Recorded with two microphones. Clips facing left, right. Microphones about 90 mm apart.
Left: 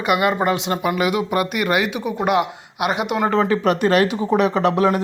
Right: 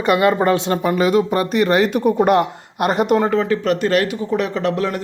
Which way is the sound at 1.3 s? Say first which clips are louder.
Right 3 dB; 30° right (ahead or behind).